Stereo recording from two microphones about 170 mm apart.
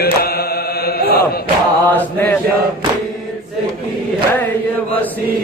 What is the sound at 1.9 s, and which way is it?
Chant, 10° left (ahead or behind).